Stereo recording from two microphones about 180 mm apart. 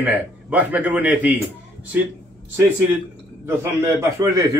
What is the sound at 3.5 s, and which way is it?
A man's voice, 15° right (ahead or behind).